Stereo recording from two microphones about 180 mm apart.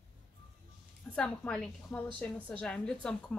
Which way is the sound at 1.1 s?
5° left (ahead or behind).